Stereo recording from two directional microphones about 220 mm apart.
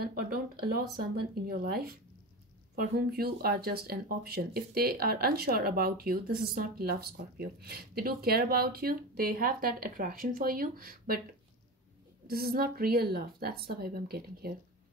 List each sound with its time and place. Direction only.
0.0 s speech: 40° right (ahead or behind)
12.3 s speech: 45° right (ahead or behind)